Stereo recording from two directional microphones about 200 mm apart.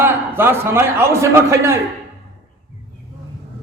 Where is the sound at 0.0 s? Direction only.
10° right (ahead or behind).